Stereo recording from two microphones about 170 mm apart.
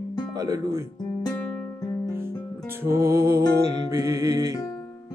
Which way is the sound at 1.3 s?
20° left (ahead or behind).